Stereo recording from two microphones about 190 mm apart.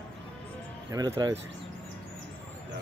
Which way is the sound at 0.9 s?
20° right (ahead or behind).